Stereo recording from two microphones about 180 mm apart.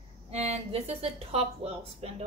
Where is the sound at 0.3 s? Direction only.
35° right (ahead or behind).